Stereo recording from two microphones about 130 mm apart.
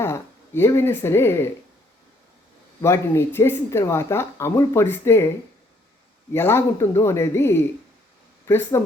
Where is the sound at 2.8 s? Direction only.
20° left (ahead or behind).